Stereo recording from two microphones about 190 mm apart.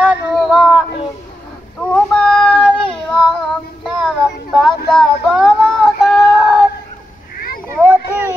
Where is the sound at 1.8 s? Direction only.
5° left (ahead or behind).